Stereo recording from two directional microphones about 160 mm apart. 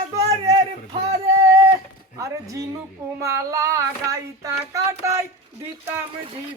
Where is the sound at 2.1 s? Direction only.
20° right (ahead or behind).